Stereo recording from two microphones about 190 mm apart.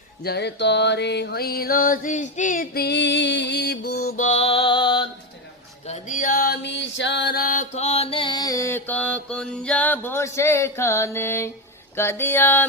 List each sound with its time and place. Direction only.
0.2 s music: 60° left (ahead or behind)
4.2 s music: 35° left (ahead or behind)
5.8 s music: 40° left (ahead or behind); by 12.6 s 10° left (ahead or behind)